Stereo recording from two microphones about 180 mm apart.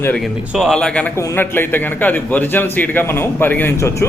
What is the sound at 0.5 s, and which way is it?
Speech, centre (ahead or behind).